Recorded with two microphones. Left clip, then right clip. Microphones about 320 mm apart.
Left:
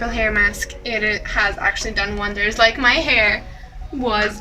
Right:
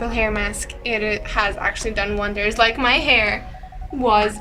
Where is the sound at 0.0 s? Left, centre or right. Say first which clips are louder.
Left 4 dB; centre.